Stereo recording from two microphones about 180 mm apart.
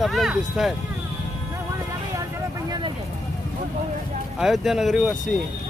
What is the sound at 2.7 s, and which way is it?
Vehicle, 25° right (ahead or behind).